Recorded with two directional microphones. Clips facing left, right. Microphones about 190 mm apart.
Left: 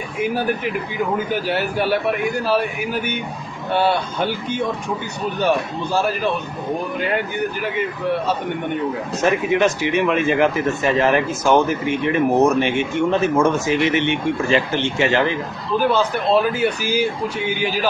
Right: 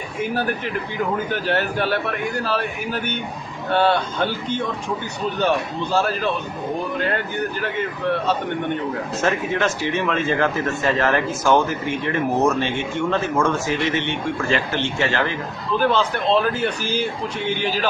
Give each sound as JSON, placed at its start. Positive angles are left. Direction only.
{"t": 0.2, "sound": "speech", "side_deg": 15}
{"t": 5.9, "sound": "speech", "side_deg": 15}
{"t": 9.2, "sound": "speech", "side_deg": 15}